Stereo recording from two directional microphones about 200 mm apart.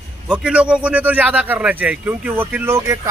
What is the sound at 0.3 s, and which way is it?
A man's voice, 5° right (ahead or behind).